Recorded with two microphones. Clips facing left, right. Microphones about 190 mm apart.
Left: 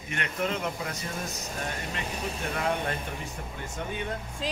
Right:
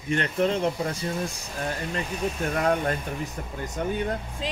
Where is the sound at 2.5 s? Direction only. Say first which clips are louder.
Right 5 dB; 45° right (ahead or behind).